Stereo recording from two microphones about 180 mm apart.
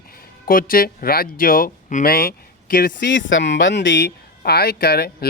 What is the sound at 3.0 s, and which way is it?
Speech, 85° left.